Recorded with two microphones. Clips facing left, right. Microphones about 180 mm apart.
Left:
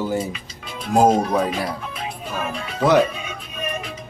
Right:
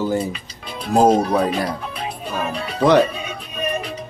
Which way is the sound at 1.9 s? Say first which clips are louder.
Right 2 dB; 35° right (ahead or behind).